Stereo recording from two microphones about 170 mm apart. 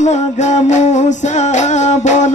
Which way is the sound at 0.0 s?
45° left (ahead or behind).